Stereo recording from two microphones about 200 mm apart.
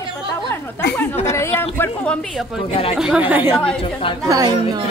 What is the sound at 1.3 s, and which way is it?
Speech, 15° left (ahead or behind).